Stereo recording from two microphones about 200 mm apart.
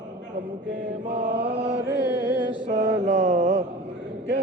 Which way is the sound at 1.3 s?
5° right (ahead or behind).